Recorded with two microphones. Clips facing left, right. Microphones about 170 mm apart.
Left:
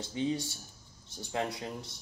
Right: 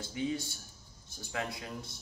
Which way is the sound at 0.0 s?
25° left (ahead or behind).